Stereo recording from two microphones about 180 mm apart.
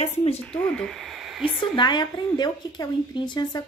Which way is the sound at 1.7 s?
25° left (ahead or behind).